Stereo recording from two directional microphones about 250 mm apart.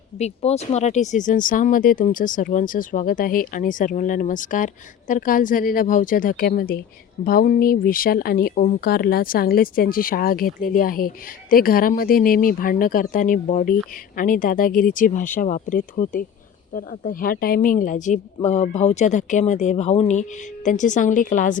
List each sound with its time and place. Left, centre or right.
0.2 s a woman's voice: left